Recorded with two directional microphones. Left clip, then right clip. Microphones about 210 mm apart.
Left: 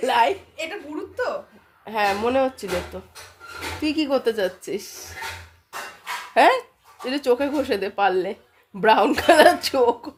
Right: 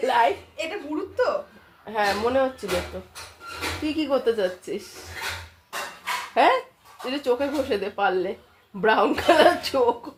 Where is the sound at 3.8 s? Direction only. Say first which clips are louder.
Left 2 dB; 55° left (ahead or behind).